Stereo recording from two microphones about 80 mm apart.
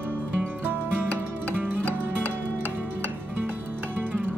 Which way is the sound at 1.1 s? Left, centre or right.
Centre.